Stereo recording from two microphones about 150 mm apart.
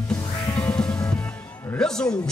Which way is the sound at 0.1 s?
10° left (ahead or behind).